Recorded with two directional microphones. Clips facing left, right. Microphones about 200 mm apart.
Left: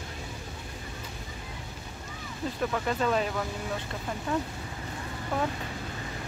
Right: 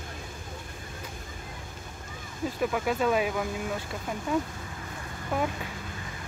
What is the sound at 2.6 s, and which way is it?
Speech, 5° right (ahead or behind).